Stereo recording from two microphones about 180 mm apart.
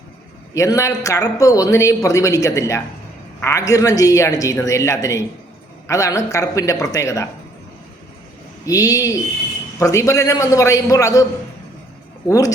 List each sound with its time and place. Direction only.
0.5 s a man's voice: 15° left (ahead or behind)
8.6 s a man's voice: 20° left (ahead or behind)